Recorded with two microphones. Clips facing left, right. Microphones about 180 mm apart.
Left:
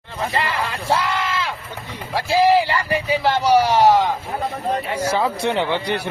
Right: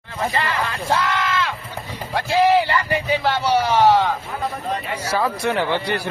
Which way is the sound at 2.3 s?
35° left (ahead or behind).